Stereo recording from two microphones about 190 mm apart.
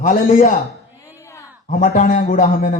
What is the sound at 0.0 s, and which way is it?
Speech, 45° left (ahead or behind).